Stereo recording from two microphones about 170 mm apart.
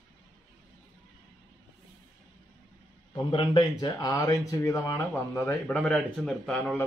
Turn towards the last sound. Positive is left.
turn(degrees=5)  # may be behind; listen again after turning